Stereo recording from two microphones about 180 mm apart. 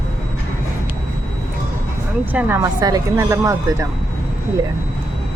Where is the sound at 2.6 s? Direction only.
20° right (ahead or behind).